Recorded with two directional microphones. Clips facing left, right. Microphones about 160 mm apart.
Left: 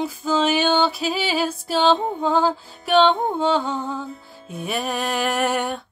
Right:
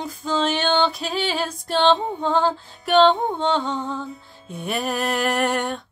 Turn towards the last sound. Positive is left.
turn(degrees=5)  # may be behind; listen again after turning